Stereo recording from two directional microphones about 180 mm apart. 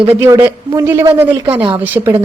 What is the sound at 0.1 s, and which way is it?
Speech, 15° right (ahead or behind).